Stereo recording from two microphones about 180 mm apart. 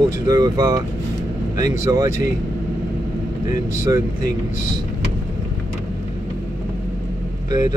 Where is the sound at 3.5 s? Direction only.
20° right (ahead or behind).